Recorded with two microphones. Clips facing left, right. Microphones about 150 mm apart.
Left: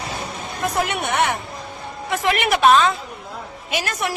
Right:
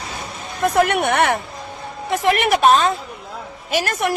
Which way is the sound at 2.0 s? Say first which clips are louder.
Right 3 dB; 45° right (ahead or behind).